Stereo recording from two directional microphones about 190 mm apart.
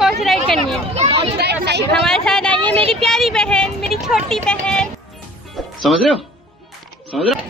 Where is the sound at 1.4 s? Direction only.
60° right (ahead or behind).